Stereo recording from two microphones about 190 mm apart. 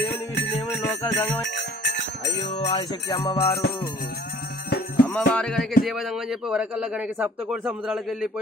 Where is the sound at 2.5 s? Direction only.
35° left (ahead or behind).